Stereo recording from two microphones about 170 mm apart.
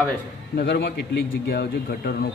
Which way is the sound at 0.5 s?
70° left (ahead or behind).